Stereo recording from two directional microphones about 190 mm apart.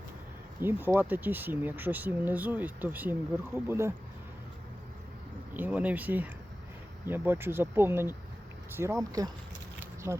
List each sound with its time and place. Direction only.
0.6 s speech: 10° right (ahead or behind)
5.5 s speech: 10° right (ahead or behind)
9.8 s a sound: 15° right (ahead or behind)